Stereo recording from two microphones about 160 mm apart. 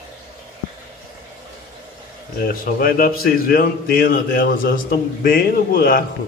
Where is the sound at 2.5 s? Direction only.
65° left (ahead or behind).